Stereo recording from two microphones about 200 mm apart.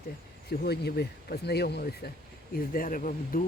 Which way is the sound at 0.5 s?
50° left (ahead or behind).